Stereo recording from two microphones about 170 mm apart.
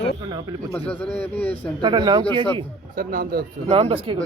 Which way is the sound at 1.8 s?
25° right (ahead or behind).